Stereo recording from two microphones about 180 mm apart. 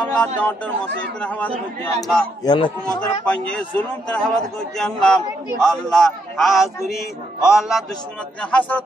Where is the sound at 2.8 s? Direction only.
5° left (ahead or behind).